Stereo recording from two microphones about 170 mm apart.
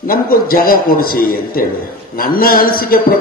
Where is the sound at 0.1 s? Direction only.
60° left (ahead or behind).